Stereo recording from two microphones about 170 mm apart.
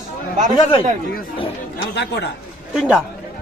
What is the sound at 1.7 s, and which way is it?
Speech, 90° left.